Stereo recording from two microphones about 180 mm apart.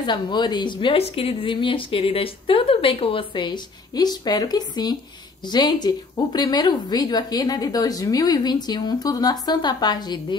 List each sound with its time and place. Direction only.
0.0 s speech: 25° left (ahead or behind)